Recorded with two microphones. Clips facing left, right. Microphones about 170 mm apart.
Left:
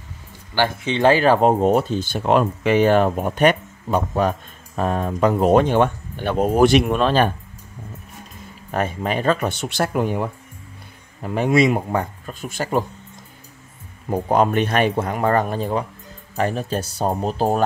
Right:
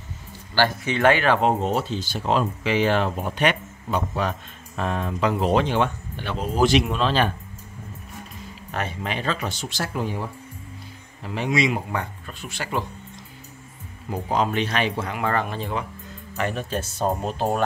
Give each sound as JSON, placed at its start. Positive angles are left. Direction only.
{"t": 0.6, "sound": "speech", "side_deg": 25}
{"t": 8.7, "sound": "speech", "side_deg": 45}
{"t": 14.1, "sound": "speech", "side_deg": 50}